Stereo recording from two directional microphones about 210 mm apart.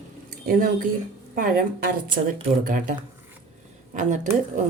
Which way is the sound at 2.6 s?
40° right (ahead or behind).